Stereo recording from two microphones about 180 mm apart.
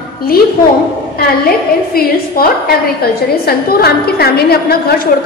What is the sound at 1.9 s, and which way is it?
A woman's voice, 55° left (ahead or behind).